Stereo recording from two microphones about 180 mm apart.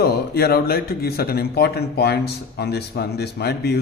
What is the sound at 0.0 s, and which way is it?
Speech, 60° left (ahead or behind).